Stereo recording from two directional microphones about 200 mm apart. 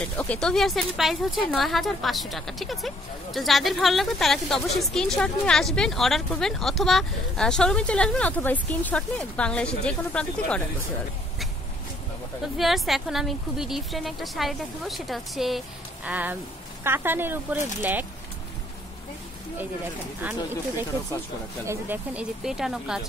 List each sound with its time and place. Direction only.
0.2 s speech: 5° left (ahead or behind)
12.5 s speech: centre (ahead or behind)
20.2 s speech: 10° right (ahead or behind)